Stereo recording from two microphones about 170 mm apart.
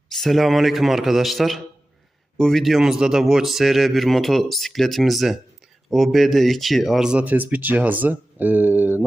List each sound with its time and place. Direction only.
0.1 s speech: centre (ahead or behind)